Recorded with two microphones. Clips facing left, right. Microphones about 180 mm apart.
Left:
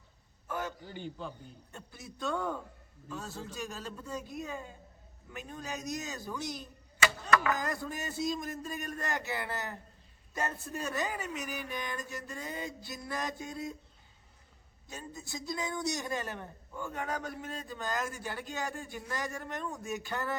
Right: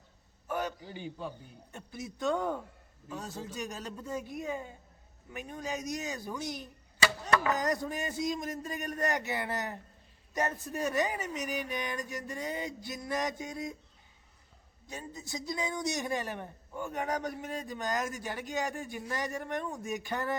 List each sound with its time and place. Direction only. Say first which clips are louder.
0.4 s a sound: right 3 dB; 15° right (ahead or behind)
0.9 s a man's voice: right 1 dB; 10° right (ahead or behind)
14.8 s a man's voice: right 2 dB; 20° right (ahead or behind)